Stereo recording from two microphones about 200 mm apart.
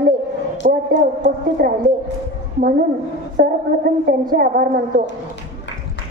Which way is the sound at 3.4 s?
50° right (ahead or behind).